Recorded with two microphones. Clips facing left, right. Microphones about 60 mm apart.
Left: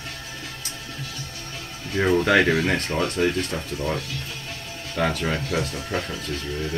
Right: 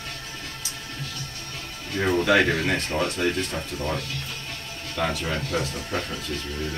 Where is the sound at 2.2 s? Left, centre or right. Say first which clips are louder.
Right 1 dB; left.